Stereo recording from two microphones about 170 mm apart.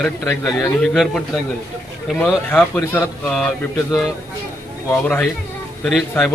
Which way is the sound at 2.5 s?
10° left (ahead or behind).